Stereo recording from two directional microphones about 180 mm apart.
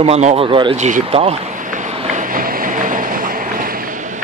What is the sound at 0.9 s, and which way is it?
Vehicle, 40° right (ahead or behind).